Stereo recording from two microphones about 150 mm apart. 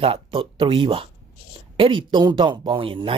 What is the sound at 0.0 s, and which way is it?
Speech, 40° right (ahead or behind).